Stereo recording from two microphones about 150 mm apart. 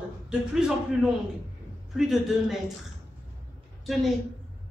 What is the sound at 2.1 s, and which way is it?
Speech, centre (ahead or behind).